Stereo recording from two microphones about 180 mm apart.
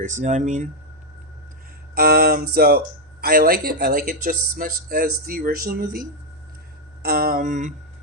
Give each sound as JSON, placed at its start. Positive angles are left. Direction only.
{"t": 0.0, "sound": "speech", "side_deg": -45}
{"t": 2.0, "sound": "speech", "side_deg": -60}
{"t": 7.0, "sound": "speech", "side_deg": -60}